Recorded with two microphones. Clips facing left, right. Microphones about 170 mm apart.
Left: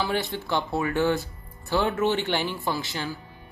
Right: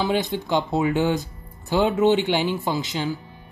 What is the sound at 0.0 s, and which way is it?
Speech, 15° right (ahead or behind).